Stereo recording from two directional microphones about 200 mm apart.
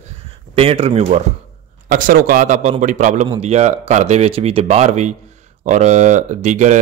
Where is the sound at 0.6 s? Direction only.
30° right (ahead or behind).